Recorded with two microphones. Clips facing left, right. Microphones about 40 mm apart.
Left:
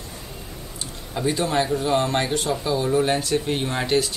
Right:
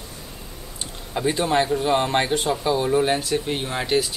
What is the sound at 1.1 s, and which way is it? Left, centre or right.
Speech, centre.